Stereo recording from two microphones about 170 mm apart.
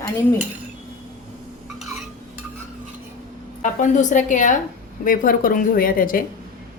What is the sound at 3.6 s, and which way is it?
A woman's voice, 50° left (ahead or behind).